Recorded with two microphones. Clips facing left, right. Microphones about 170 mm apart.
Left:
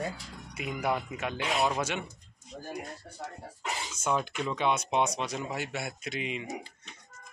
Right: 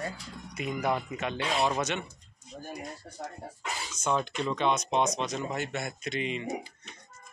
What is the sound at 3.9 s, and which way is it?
Speech, 10° left (ahead or behind).